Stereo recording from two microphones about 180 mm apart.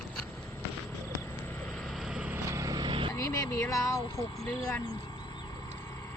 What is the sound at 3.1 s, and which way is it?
Vehicle, 15° left (ahead or behind).